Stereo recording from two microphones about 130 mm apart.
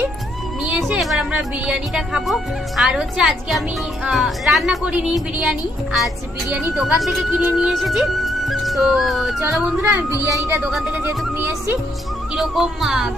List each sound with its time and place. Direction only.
0.6 s music: 5° right (ahead or behind)
1.3 s speech: 10° right (ahead or behind)
9.4 s speech: 15° right (ahead or behind)
10.6 s speech: 5° right (ahead or behind)
11.0 s speech: 15° right (ahead or behind)
12.4 s speech: 5° right (ahead or behind)